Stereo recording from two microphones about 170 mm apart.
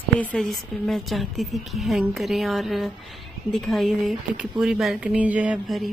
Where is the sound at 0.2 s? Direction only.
5° left (ahead or behind).